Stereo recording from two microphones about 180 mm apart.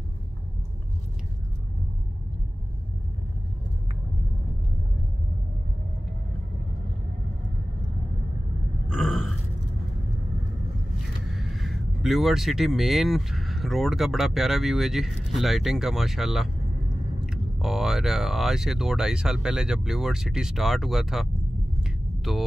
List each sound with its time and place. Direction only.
8.8 s burping: 5° right (ahead or behind)
11.3 s speech: centre (ahead or behind)
21.8 s a sound: centre (ahead or behind)